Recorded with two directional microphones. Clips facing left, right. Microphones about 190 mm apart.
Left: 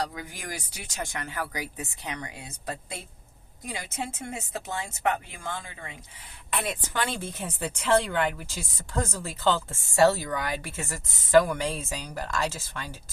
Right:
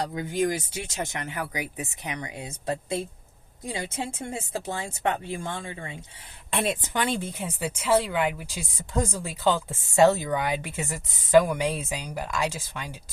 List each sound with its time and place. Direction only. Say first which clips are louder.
0.1 s speech: right 12 dB; 25° right (ahead or behind)